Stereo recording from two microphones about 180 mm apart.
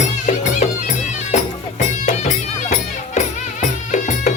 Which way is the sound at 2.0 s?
40° left (ahead or behind).